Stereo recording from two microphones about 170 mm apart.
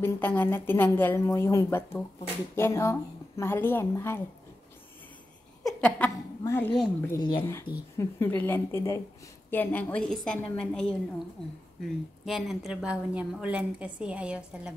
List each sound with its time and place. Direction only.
0.0 s a woman's voice: 10° left (ahead or behind)
5.6 s a sound: 5° left (ahead or behind)
6.4 s a woman's voice: 15° left (ahead or behind)
7.2 s speech: 25° left (ahead or behind)
8.0 s a woman's voice: 10° left (ahead or behind)
12.3 s a woman's voice: centre (ahead or behind)